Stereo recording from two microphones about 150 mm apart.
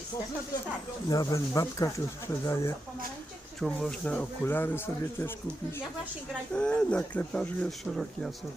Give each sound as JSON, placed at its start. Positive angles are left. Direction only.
{"t": 1.1, "sound": "speech", "side_deg": 25}
{"t": 3.6, "sound": "speech", "side_deg": 5}
{"t": 6.5, "sound": "speech", "side_deg": 5}